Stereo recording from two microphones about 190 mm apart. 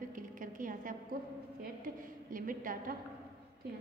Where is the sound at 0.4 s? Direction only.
45° right (ahead or behind).